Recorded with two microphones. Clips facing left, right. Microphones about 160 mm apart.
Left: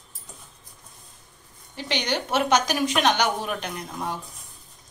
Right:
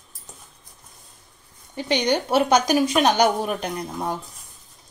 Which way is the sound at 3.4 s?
35° right (ahead or behind).